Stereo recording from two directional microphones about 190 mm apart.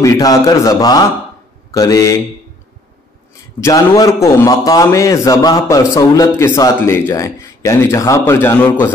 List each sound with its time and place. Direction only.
0.0 s a man's voice: 20° left (ahead or behind)
3.6 s a man's voice: 15° left (ahead or behind)